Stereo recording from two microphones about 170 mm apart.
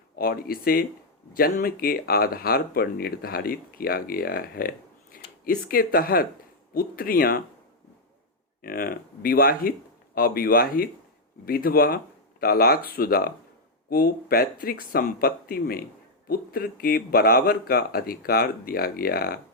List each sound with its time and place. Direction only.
0.2 s speech: 60° left (ahead or behind)
8.6 s speech: 60° left (ahead or behind)